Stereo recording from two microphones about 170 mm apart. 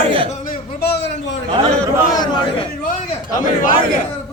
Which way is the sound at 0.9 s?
90° left.